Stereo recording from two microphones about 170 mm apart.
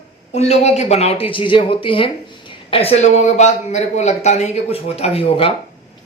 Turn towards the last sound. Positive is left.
turn(degrees=35)  # may be behind; listen again after turning